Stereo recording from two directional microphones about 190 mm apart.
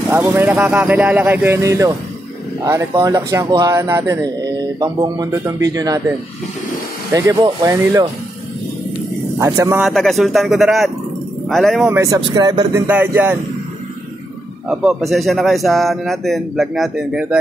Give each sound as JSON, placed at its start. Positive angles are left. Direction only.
{"t": 0.1, "sound": "speech", "side_deg": -10}
{"t": 9.4, "sound": "speech", "side_deg": -15}
{"t": 9.8, "sound": "speech", "side_deg": 0}
{"t": 11.9, "sound": "speech", "side_deg": -15}
{"t": 12.8, "sound": "speech", "side_deg": -10}
{"t": 14.7, "sound": "speech", "side_deg": -5}